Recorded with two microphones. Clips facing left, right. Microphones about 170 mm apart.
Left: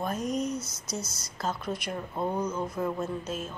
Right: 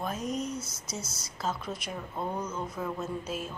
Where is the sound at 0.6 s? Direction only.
25° right (ahead or behind).